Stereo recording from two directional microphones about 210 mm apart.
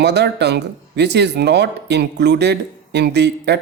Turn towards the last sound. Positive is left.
turn(degrees=-55)  # may be behind; listen again after turning